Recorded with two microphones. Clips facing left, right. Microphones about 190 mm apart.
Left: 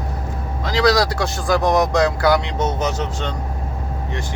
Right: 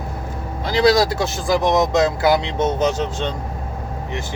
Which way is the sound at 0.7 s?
25° right (ahead or behind).